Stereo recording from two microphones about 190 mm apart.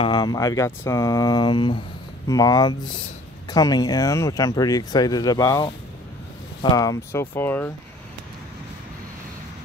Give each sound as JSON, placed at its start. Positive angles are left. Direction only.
{"t": 0.0, "sound": "speech", "side_deg": 25}